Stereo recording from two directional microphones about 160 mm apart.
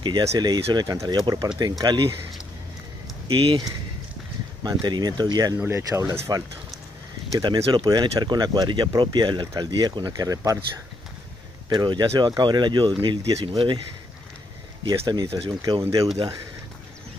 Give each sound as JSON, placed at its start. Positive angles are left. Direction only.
{"t": 0.3, "sound": "speech", "side_deg": -25}
{"t": 3.3, "sound": "speech", "side_deg": -35}
{"t": 4.6, "sound": "speech", "side_deg": -25}
{"t": 11.7, "sound": "speech", "side_deg": -30}
{"t": 14.9, "sound": "speech", "side_deg": -25}
{"t": 15.8, "sound": "speech", "side_deg": -20}